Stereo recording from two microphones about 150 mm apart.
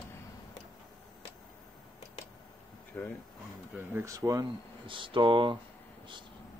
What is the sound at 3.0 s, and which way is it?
Speech, 10° left (ahead or behind).